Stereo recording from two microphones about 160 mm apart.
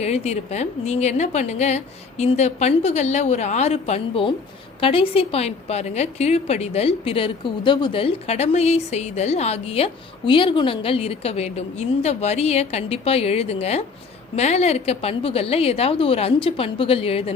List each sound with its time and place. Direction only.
0.0 s a woman's voice: 40° left (ahead or behind)